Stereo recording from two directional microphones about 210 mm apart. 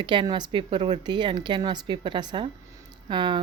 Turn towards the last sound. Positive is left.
turn(degrees=-20)  # may be behind; listen again after turning